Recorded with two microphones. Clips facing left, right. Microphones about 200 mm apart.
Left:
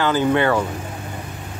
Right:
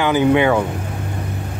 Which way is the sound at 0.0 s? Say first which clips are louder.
Right 3 dB; 15° right (ahead or behind).